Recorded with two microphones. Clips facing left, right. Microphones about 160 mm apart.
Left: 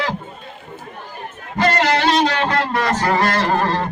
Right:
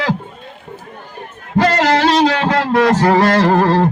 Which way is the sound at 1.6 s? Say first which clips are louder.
Right 4 dB; 90° right.